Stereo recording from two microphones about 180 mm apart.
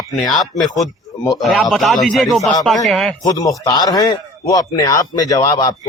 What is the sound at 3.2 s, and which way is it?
Speech, 20° left (ahead or behind).